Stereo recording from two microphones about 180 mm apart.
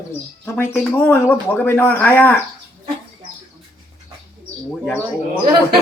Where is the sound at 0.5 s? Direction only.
10° left (ahead or behind).